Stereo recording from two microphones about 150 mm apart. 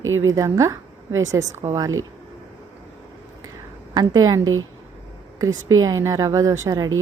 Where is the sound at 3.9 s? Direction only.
25° right (ahead or behind).